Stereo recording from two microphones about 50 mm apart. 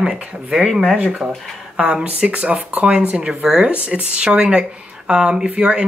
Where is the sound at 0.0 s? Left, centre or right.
Centre.